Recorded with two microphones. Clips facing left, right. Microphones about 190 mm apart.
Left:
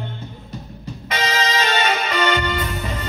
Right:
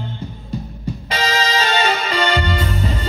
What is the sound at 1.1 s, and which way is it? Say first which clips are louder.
Music: right 1 dB; 30° right (ahead or behind).